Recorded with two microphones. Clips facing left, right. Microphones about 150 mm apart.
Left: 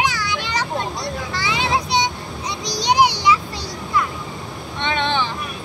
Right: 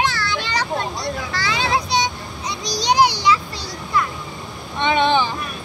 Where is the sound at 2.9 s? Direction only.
20° left (ahead or behind).